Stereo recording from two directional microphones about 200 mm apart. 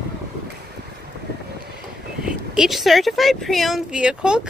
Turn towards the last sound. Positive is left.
turn(degrees=-5)  # may be behind; listen again after turning